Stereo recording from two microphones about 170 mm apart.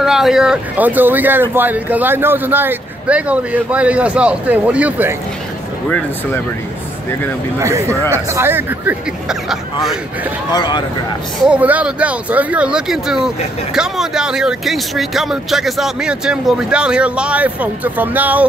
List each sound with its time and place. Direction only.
0.0 s speech: centre (ahead or behind)
5.9 s speech: 5° left (ahead or behind)
7.6 s speech: 15° right (ahead or behind); by 9.9 s centre (ahead or behind)
10.5 s speech: 25° left (ahead or behind)
11.4 s speech: 10° right (ahead or behind)